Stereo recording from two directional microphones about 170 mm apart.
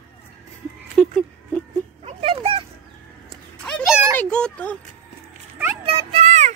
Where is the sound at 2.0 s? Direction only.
35° right (ahead or behind).